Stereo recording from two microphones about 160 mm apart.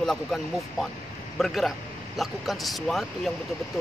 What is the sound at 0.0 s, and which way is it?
Speech, centre (ahead or behind).